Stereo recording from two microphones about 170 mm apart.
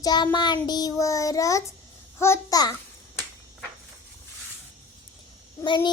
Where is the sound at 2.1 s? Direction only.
15° left (ahead or behind).